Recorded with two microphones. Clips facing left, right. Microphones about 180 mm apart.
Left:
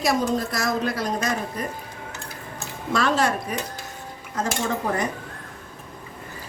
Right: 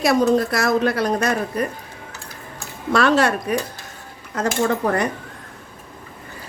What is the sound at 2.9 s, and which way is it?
Speech, 70° right (ahead or behind).